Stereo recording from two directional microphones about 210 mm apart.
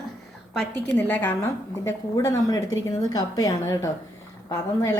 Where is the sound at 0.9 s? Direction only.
10° left (ahead or behind).